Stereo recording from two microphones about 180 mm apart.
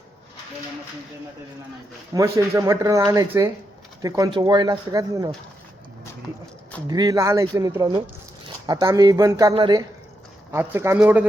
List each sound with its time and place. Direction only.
2.1 s speech: 15° right (ahead or behind)
6.8 s speech: 20° right (ahead or behind)
10.5 s speech: 15° right (ahead or behind)